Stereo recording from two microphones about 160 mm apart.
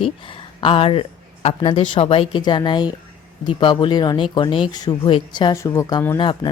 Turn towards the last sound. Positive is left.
turn(degrees=30)  # may be behind; listen again after turning